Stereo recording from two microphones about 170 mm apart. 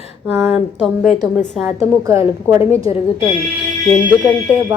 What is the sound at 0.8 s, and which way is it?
Speech, 5° left (ahead or behind).